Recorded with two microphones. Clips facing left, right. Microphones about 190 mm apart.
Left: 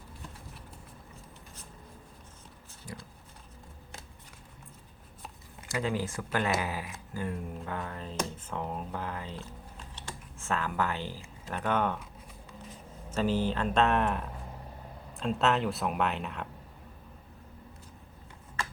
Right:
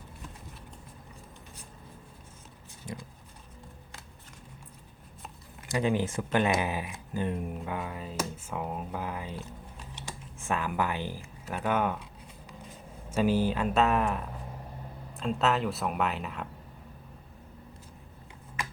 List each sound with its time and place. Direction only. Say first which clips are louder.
2.8 s a sound: right 4 dB; 20° right (ahead or behind)
5.6 s speech: right 4 dB; 20° right (ahead or behind)
13.1 s speech: right 3 dB; 10° right (ahead or behind)